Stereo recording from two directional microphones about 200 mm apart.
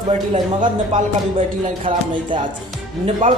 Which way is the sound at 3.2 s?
40° right (ahead or behind).